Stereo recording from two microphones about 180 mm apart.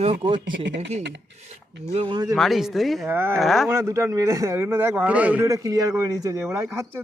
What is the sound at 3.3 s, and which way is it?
Speech, centre (ahead or behind).